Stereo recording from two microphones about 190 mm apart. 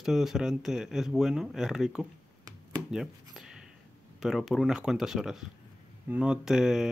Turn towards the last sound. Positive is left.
turn(degrees=-5)  # may be behind; listen again after turning